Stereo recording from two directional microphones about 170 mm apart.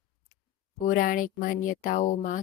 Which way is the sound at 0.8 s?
55° left (ahead or behind).